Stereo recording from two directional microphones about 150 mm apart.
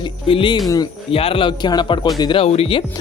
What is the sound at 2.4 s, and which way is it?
Speech, 40° left (ahead or behind).